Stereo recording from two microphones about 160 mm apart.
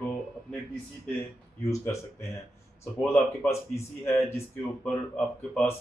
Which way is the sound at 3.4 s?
15° left (ahead or behind).